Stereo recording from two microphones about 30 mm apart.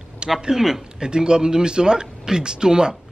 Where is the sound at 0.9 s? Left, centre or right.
Right.